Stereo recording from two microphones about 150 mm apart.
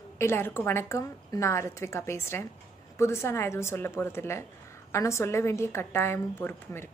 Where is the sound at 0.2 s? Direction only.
15° left (ahead or behind).